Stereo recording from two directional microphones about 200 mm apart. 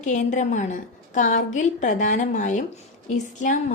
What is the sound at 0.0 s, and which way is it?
A woman's voice, 40° left (ahead or behind).